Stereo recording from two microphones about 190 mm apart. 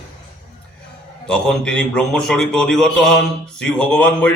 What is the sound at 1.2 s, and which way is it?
A man's voice, 5° left (ahead or behind).